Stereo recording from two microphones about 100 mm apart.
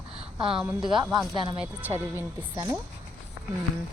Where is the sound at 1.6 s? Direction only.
20° right (ahead or behind).